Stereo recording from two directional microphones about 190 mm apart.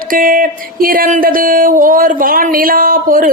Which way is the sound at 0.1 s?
45° right (ahead or behind).